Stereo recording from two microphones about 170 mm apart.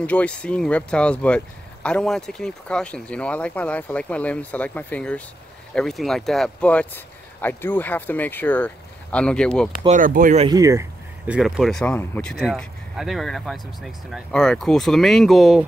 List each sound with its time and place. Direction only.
0.0 s speech: 10° left (ahead or behind)
9.8 s speech: 50° right (ahead or behind)
10.5 s speech: 20° right (ahead or behind)
11.3 s speech: centre (ahead or behind)